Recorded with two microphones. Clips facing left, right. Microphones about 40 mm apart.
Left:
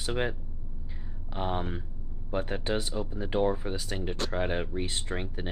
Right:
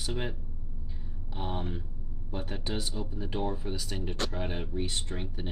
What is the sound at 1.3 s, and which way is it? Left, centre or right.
Speech, left.